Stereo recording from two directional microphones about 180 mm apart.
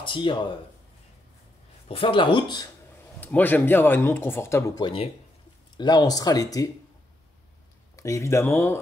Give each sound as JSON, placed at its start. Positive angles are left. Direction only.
{"t": 0.0, "sound": "speech", "side_deg": 25}
{"t": 1.9, "sound": "speech", "side_deg": 30}
{"t": 3.2, "sound": "speech", "side_deg": 10}
{"t": 7.9, "sound": "speech", "side_deg": 15}